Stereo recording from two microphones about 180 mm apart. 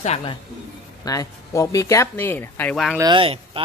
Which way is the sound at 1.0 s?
15° left (ahead or behind).